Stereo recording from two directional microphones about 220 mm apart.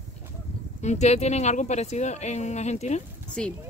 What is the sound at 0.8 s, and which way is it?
Speech, 30° left (ahead or behind).